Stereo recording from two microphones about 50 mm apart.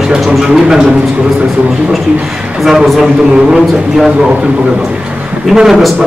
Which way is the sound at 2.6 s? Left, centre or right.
Centre.